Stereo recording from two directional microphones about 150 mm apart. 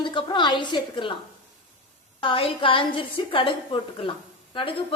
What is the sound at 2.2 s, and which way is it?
A woman's voice, 35° left (ahead or behind).